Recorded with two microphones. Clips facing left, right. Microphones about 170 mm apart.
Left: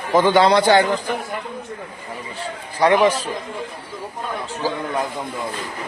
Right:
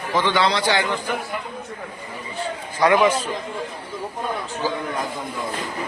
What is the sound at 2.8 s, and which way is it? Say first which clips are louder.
Speech: left 2 dB; 30° left (ahead or behind).